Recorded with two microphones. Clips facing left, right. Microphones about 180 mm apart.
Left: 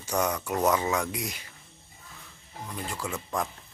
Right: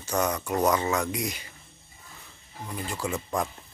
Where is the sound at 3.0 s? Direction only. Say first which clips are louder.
Right 3 dB; centre (ahead or behind).